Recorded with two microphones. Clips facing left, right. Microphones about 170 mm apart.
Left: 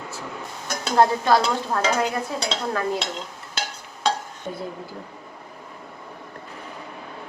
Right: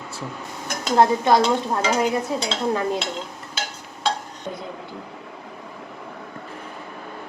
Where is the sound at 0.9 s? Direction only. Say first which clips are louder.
Right 1 dB; 20° right (ahead or behind).